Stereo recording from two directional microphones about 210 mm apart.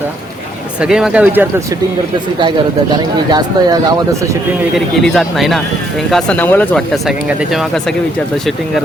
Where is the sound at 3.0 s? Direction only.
20° right (ahead or behind).